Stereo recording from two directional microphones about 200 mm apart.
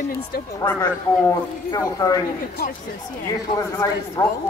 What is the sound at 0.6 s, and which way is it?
A man's voice, 10° left (ahead or behind).